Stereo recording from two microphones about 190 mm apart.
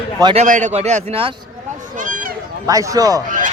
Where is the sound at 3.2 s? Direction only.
45° right (ahead or behind).